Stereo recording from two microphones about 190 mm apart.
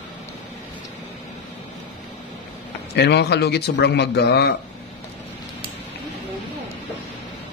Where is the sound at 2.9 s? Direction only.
60° left (ahead or behind).